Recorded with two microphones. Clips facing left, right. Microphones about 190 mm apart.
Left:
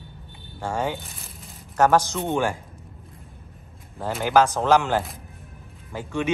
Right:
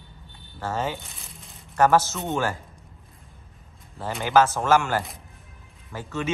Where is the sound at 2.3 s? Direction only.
15° left (ahead or behind).